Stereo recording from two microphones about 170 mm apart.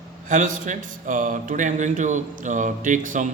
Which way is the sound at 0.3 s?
45° right (ahead or behind).